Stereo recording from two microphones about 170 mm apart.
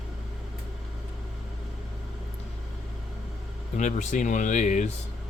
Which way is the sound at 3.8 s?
45° left (ahead or behind).